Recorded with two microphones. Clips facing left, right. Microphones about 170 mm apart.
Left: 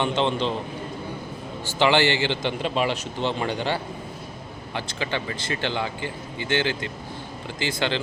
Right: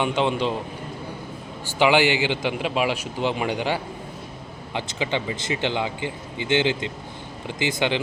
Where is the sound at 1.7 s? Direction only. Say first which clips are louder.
Right 1 dB; 10° right (ahead or behind).